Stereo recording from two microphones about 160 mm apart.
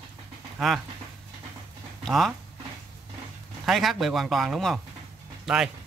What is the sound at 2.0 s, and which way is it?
Speech, centre (ahead or behind).